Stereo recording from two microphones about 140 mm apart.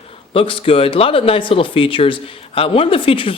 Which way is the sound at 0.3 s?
40° left (ahead or behind).